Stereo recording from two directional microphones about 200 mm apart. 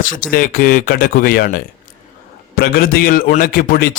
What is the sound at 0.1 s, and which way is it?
A man's voice, 45° left (ahead or behind).